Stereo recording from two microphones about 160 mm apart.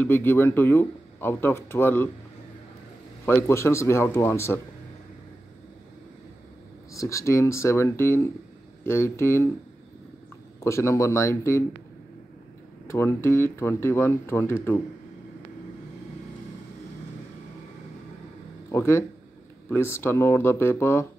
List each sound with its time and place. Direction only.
0.0 s speech: 15° left (ahead or behind)
3.3 s speech: 15° left (ahead or behind)
6.9 s speech: 20° left (ahead or behind)
10.6 s speech: 15° left (ahead or behind)
12.8 s speech: 15° left (ahead or behind)
18.7 s speech: 15° left (ahead or behind)